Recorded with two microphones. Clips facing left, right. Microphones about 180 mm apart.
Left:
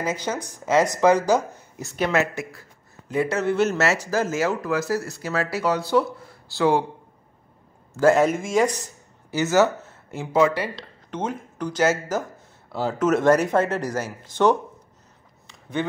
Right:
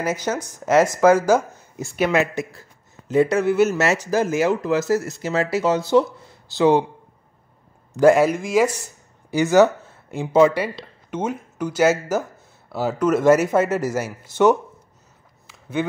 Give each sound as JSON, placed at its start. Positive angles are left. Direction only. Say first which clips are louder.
{"t": 0.0, "sound": "speech", "louder": "right 3 dB", "side_deg": -10}
{"t": 0.3, "sound": "speech", "louder": "right 3 dB", "side_deg": 15}
{"t": 1.8, "sound": "speech", "louder": "right 3 dB", "side_deg": -10}
{"t": 3.1, "sound": "a man's voice", "louder": "right 6 dB", "side_deg": -25}
{"t": 3.3, "sound": "speech", "louder": "right 3 dB", "side_deg": -5}
{"t": 7.9, "sound": "a man's voice", "louder": "right 4 dB", "side_deg": -15}
{"t": 8.2, "sound": "speech", "louder": "right 2 dB", "side_deg": 0}
{"t": 10.6, "sound": "speech", "louder": "right 3 dB", "side_deg": -10}